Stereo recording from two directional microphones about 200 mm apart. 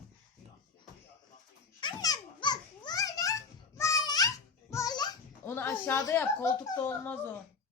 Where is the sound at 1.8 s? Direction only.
20° left (ahead or behind).